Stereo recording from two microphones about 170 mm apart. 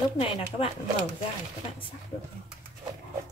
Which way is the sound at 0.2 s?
35° left (ahead or behind).